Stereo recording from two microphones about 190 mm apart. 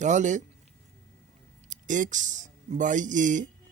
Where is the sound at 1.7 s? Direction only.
40° right (ahead or behind).